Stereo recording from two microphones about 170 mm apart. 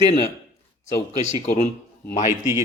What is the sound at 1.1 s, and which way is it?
Speech, 45° left (ahead or behind).